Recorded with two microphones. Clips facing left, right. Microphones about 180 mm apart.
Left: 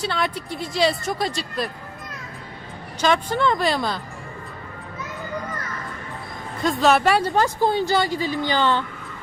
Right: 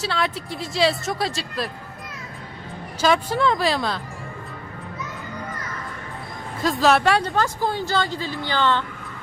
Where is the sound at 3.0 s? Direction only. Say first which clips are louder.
Right 1 dB; 5° right (ahead or behind).